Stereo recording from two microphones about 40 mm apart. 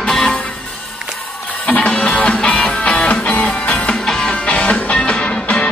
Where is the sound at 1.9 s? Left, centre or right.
Left.